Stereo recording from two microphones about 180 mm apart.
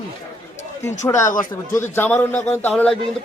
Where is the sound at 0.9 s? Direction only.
15° left (ahead or behind).